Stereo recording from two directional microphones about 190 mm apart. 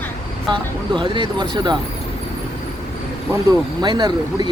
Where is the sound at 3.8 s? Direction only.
20° right (ahead or behind).